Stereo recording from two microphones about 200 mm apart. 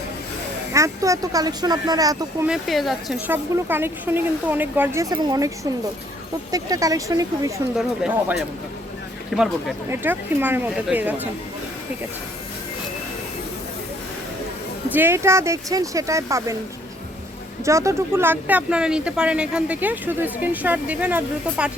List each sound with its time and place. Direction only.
0.7 s speech: 15° right (ahead or behind)
2.5 s speech: centre (ahead or behind); by 5.5 s 20° right (ahead or behind)
6.5 s speech: 15° right (ahead or behind)
7.8 s speech: 5° right (ahead or behind)
14.8 s speech: 10° right (ahead or behind)
17.7 s speech: 15° right (ahead or behind)